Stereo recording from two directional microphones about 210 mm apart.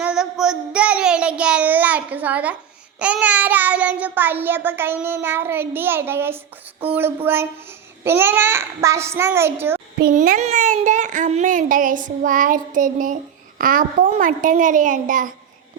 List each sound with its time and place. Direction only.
0.0 s child singing: 5° right (ahead or behind)
10.0 s a child's voice: 40° right (ahead or behind)